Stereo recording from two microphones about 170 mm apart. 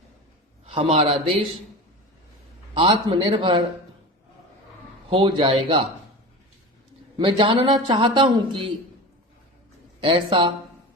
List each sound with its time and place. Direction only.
0.6 s a man's voice: 35° right (ahead or behind)
2.7 s a man's voice: 30° right (ahead or behind)
5.0 s a man's voice: 30° right (ahead or behind)
7.2 s a man's voice: 30° right (ahead or behind)
10.0 s a man's voice: 30° right (ahead or behind)